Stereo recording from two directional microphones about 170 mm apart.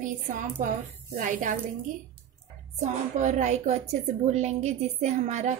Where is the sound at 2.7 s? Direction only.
45° right (ahead or behind).